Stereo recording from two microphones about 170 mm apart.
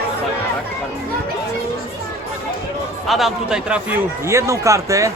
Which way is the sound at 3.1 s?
Centre (ahead or behind).